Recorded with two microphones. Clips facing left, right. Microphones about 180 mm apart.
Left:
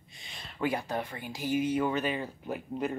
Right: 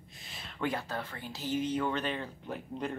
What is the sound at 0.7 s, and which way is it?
Speech, 15° left (ahead or behind).